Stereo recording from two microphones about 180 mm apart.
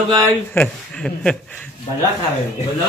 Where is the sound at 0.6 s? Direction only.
5° left (ahead or behind).